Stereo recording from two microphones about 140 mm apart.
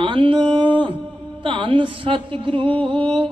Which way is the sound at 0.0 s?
35° right (ahead or behind).